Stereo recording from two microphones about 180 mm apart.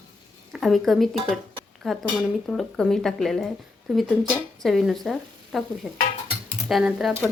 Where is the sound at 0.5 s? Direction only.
Centre (ahead or behind).